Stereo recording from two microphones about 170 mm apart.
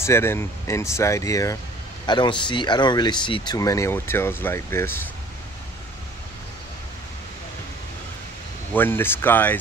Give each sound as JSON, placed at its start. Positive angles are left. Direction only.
{"t": 0.0, "sound": "speech", "side_deg": 15}
{"t": 8.7, "sound": "speech", "side_deg": 10}